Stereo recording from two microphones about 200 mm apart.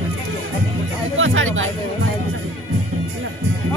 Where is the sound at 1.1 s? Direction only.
80° right.